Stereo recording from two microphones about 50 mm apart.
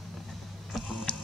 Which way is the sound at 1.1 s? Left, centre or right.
Left.